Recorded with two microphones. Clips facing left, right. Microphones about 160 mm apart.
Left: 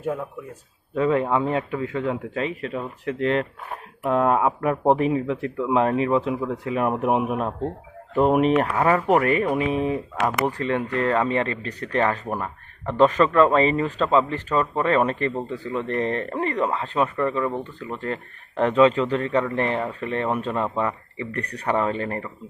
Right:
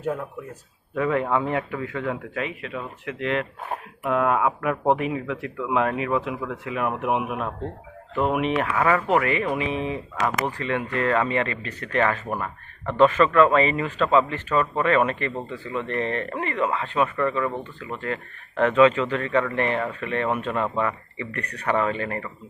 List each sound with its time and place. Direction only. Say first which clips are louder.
0.9 s speech: left 2 dB; 25° left (ahead or behind); by 10.4 s 45° left (ahead or behind)
10.6 s speech: left 2 dB; 35° left (ahead or behind)